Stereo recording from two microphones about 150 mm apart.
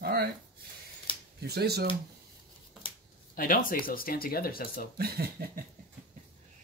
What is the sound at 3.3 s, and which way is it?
Speech, 65° left (ahead or behind).